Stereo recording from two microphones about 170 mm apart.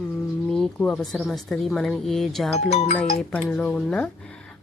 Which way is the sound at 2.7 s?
40° left (ahead or behind).